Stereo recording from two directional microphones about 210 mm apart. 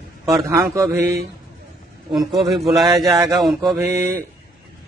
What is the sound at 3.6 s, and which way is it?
Speech, 15° right (ahead or behind).